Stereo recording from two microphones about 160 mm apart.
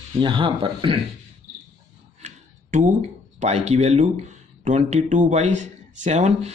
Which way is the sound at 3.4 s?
45° right (ahead or behind).